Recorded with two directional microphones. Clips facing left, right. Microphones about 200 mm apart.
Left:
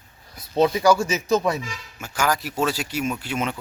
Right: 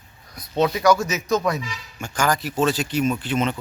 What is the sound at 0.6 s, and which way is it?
Speech, 30° left (ahead or behind).